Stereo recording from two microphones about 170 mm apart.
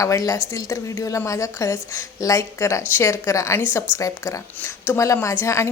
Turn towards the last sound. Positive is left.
turn(degrees=15)  # may be behind; listen again after turning